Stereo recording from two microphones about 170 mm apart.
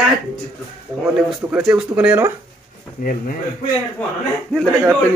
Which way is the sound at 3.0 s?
55° left (ahead or behind).